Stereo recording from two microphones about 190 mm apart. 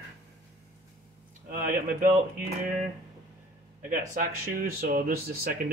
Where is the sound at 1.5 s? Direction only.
45° right (ahead or behind).